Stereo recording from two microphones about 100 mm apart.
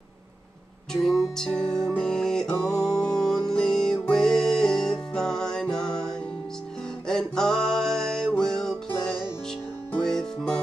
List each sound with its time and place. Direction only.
0.9 s music: 5° left (ahead or behind)